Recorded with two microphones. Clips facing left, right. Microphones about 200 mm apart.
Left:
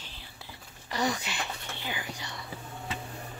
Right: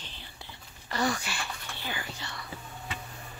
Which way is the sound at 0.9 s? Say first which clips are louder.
Right 1 dB; 15° left (ahead or behind).